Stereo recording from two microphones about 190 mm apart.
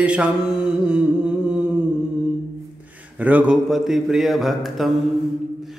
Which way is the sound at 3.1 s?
10° right (ahead or behind).